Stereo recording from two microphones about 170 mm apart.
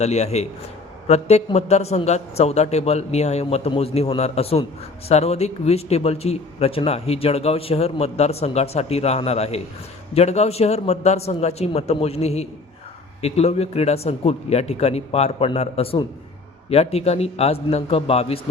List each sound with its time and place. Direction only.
0.0 s speech: 40° left (ahead or behind)